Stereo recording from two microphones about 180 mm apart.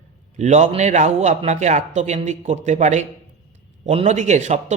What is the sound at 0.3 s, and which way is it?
A man's voice, 40° right (ahead or behind).